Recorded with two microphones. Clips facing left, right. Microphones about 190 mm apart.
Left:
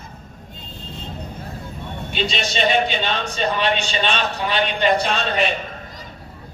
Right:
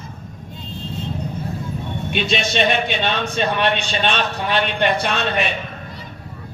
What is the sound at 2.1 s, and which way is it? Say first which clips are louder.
A man's voice: right 3 dB; 55° right (ahead or behind).